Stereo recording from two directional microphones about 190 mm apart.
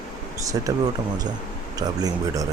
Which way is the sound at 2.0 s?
20° right (ahead or behind).